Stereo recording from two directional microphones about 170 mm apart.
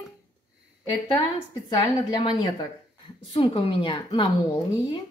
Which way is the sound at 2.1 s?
25° left (ahead or behind).